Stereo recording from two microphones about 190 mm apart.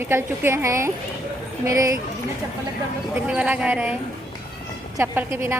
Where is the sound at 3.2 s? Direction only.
5° right (ahead or behind).